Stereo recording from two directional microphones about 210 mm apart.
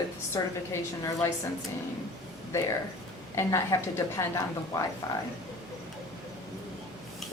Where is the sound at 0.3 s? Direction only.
15° left (ahead or behind).